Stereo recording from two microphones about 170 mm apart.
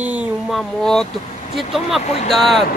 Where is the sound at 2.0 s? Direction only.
40° left (ahead or behind).